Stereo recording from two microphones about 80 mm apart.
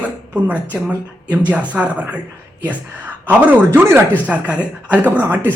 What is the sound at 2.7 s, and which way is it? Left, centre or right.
A woman's voice, centre.